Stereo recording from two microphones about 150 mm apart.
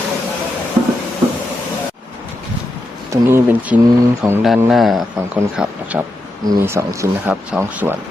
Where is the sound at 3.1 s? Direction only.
15° right (ahead or behind).